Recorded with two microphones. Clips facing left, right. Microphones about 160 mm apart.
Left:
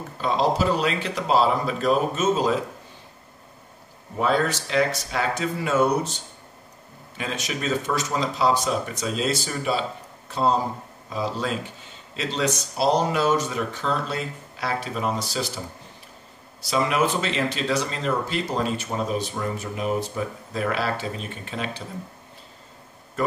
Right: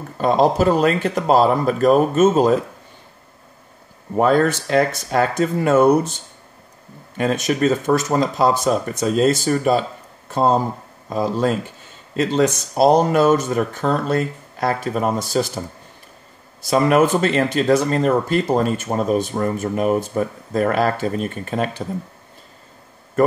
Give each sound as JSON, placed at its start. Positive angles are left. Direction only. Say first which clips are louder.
{"t": 0.2, "sound": "speech", "louder": "right 6 dB", "side_deg": -50}
{"t": 4.2, "sound": "speech", "louder": "right 7 dB", "side_deg": -50}
{"t": 7.2, "sound": "speech", "louder": "right 11 dB", "side_deg": -50}
{"t": 16.6, "sound": "speech", "louder": "right 7 dB", "side_deg": -50}